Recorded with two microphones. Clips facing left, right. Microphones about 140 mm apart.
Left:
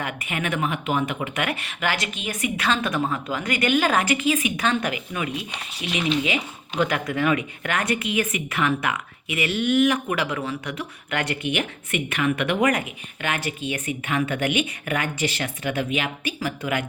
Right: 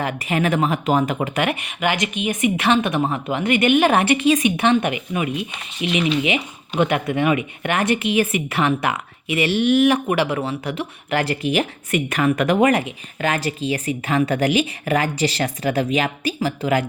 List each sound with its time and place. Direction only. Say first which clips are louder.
0.0 s speech: right 7 dB; 35° right (ahead or behind)
1.5 s speech: right 4 dB; 20° right (ahead or behind)